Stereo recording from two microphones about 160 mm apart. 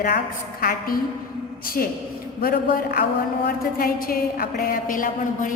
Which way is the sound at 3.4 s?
65° left (ahead or behind).